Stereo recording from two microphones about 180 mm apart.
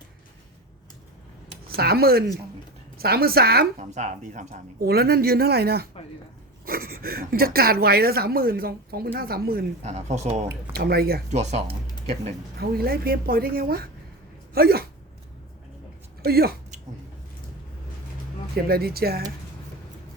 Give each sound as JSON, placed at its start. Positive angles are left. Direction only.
{"t": 1.6, "sound": "speech", "side_deg": -60}
{"t": 3.8, "sound": "speech", "side_deg": -40}
{"t": 4.9, "sound": "speech", "side_deg": -60}
{"t": 9.8, "sound": "speech", "side_deg": -40}
{"t": 10.7, "sound": "speech", "side_deg": -60}
{"t": 11.3, "sound": "speech", "side_deg": -40}
{"t": 12.5, "sound": "speech", "side_deg": -60}
{"t": 16.2, "sound": "speech", "side_deg": -60}
{"t": 18.5, "sound": "speech", "side_deg": -60}